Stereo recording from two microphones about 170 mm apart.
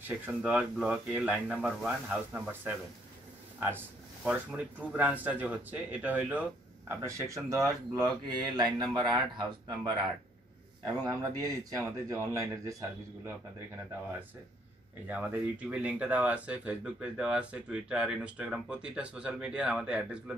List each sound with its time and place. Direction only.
0.0 s speech: 10° right (ahead or behind); by 9.9 s 25° right (ahead or behind)
11.1 s speech: 20° right (ahead or behind)
15.0 s speech: 10° right (ahead or behind)